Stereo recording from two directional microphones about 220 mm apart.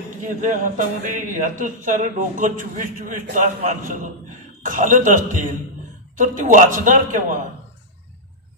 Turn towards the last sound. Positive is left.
turn(degrees=-35)  # may be behind; listen again after turning